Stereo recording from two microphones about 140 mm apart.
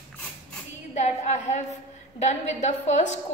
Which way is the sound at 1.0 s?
55° left (ahead or behind).